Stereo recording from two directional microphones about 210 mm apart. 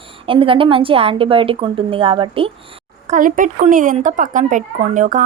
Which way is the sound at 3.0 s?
35° right (ahead or behind).